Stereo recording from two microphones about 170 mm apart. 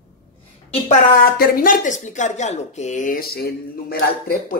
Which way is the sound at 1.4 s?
55° left (ahead or behind).